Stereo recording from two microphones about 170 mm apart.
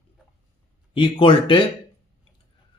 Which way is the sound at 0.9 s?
30° left (ahead or behind).